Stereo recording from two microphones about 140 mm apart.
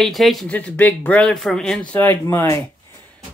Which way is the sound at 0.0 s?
Centre (ahead or behind).